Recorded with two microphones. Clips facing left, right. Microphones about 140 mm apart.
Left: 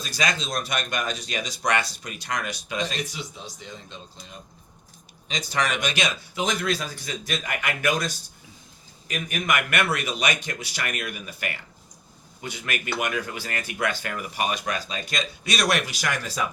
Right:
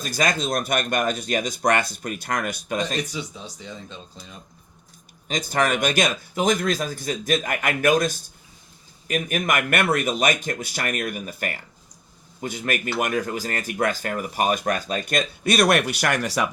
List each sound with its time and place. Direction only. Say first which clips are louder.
0.0 s speech: right 4 dB; 50° right (ahead or behind)
5.3 s speech: right 4 dB; 50° right (ahead or behind); by 16.5 s 70° right (ahead or behind)